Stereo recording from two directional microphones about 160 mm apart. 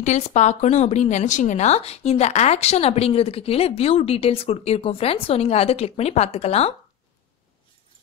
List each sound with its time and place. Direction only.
0.0 s a woman's voice: 45° left (ahead or behind)